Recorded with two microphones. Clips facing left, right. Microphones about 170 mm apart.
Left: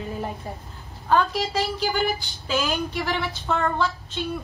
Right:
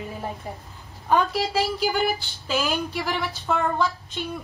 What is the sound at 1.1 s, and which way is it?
A woman's voice, 10° right (ahead or behind).